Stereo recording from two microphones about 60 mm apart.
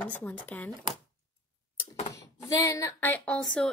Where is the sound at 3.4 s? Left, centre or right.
Centre.